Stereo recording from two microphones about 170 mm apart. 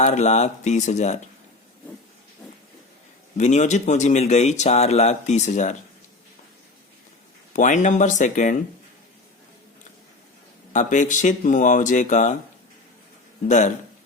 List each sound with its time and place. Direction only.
0.0 s speech: 45° left (ahead or behind)
3.3 s speech: 45° left (ahead or behind)
7.5 s speech: 45° left (ahead or behind)
10.7 s speech: 45° left (ahead or behind)